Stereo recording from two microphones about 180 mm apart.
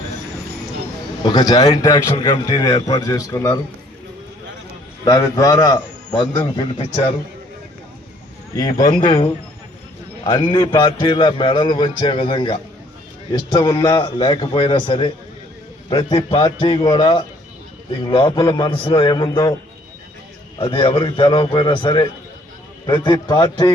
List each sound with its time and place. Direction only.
1.2 s a man's voice: 25° left (ahead or behind)
5.0 s a man's voice: 20° left (ahead or behind)
8.9 s a man's voice: 25° left (ahead or behind)
10.5 s a man's voice: 25° left (ahead or behind)
20.6 s a man's voice: 30° left (ahead or behind)